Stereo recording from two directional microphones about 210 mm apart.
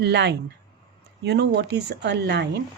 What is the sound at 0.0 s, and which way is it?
A woman's voice, 55° right (ahead or behind).